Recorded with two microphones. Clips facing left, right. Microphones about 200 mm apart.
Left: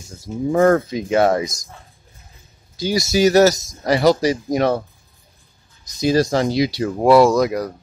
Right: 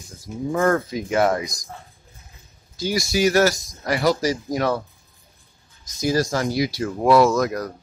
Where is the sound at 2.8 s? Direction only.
20° left (ahead or behind).